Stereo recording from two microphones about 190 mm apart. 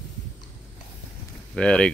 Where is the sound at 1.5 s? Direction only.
5° left (ahead or behind).